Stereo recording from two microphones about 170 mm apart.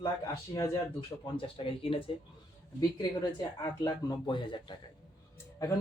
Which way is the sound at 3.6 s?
25° left (ahead or behind).